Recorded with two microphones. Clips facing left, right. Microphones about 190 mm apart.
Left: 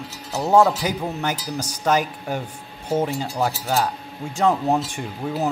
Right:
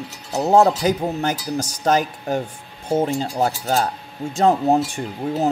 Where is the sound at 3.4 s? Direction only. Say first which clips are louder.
Right 2 dB; 45° right (ahead or behind).